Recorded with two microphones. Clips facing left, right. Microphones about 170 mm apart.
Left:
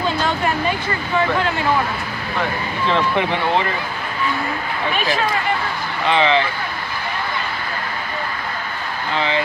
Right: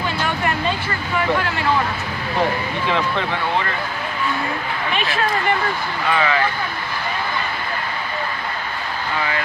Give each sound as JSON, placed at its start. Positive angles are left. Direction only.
{"t": 0.7, "sound": "speech", "side_deg": 20}
{"t": 3.2, "sound": "speech", "side_deg": 20}
{"t": 4.9, "sound": "speech", "side_deg": 40}
{"t": 6.0, "sound": "speech", "side_deg": 25}